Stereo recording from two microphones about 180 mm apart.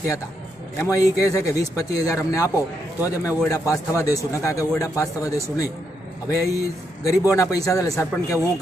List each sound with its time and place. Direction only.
0.7 s speech: 20° left (ahead or behind)